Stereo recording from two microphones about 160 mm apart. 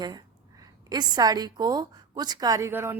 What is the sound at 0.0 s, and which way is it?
A woman's voice, 25° right (ahead or behind).